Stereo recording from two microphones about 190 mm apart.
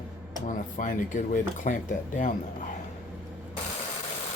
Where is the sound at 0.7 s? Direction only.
45° left (ahead or behind).